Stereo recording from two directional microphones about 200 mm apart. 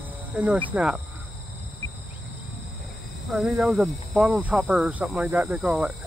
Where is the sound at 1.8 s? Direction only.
15° left (ahead or behind).